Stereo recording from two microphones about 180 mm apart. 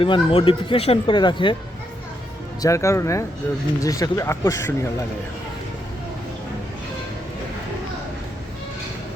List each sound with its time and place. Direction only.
0.0 s speech: 30° left (ahead or behind)
2.6 s speech: 15° left (ahead or behind)